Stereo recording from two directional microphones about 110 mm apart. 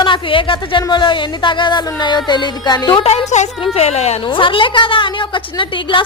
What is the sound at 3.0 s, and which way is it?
Speech, 70° left (ahead or behind).